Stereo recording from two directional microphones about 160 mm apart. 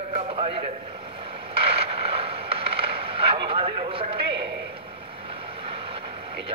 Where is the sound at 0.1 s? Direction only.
35° right (ahead or behind).